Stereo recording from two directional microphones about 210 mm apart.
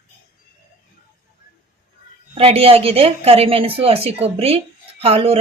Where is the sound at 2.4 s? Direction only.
30° right (ahead or behind).